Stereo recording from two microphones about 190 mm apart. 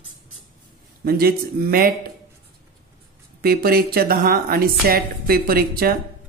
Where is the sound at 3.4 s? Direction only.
55° right (ahead or behind).